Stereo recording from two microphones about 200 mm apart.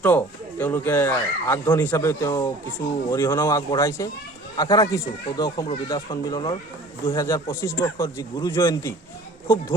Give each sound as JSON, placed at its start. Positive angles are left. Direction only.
{"t": 0.0, "sound": "speech", "side_deg": 10}